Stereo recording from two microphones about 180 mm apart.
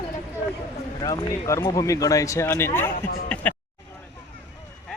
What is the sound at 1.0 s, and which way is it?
Speech, 20° left (ahead or behind).